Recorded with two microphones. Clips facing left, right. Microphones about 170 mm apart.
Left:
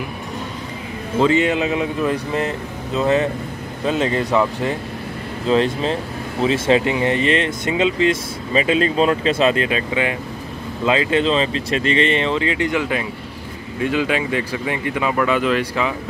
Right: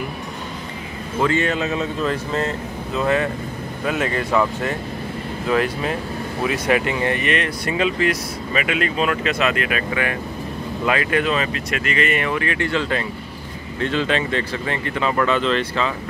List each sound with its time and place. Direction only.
1.2 s speech: 15° left (ahead or behind)